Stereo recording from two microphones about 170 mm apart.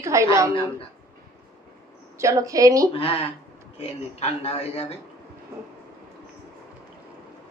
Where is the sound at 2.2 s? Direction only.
20° right (ahead or behind).